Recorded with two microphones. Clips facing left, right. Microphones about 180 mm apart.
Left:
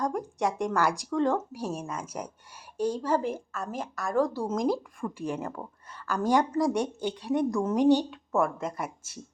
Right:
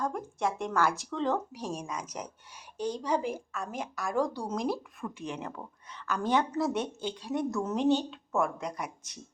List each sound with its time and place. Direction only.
0.0 s a woman's voice: 15° left (ahead or behind)
4.7 s a woman's voice: 10° left (ahead or behind)